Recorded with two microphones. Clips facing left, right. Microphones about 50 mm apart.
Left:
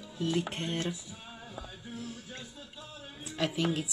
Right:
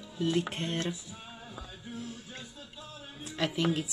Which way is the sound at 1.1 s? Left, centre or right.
Centre.